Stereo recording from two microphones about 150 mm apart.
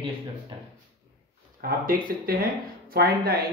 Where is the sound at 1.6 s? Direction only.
75° right (ahead or behind).